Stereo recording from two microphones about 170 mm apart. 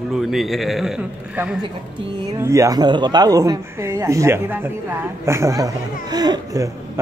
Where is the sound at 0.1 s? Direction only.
Centre (ahead or behind).